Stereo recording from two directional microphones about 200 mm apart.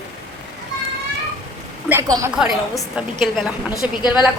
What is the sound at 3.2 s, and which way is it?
Speech, centre (ahead or behind).